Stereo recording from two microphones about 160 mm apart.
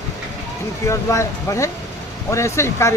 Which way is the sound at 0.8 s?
20° left (ahead or behind).